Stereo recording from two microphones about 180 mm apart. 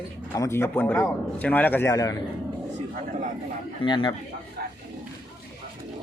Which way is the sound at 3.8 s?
25° left (ahead or behind).